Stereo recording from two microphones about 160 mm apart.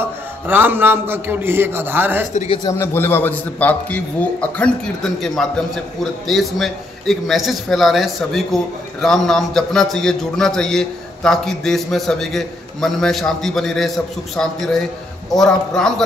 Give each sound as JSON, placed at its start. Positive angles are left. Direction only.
{"t": 0.0, "sound": "a man's voice", "side_deg": -10}
{"t": 2.3, "sound": "a man's voice", "side_deg": 40}
{"t": 2.6, "sound": "a man's voice", "side_deg": 15}